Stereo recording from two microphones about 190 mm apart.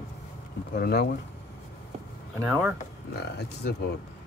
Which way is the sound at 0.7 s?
55° left (ahead or behind).